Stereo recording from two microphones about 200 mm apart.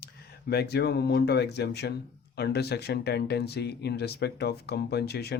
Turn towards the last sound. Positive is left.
turn(degrees=55)  # may be behind; listen again after turning